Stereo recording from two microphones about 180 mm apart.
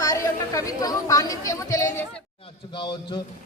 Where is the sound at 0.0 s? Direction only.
20° left (ahead or behind).